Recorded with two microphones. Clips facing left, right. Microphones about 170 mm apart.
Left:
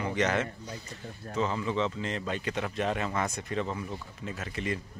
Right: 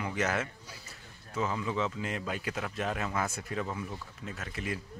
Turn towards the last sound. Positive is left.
turn(degrees=-5)  # may be behind; listen again after turning